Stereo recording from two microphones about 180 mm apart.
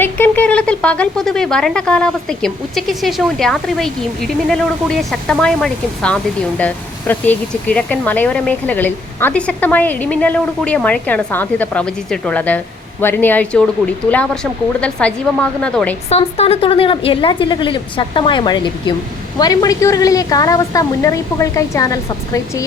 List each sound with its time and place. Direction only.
0.0 s speech: 10° left (ahead or behind)
14.8 s speech: 5° left (ahead or behind)
16.0 s a woman's voice: 35° left (ahead or behind); by 22.6 s 20° left (ahead or behind)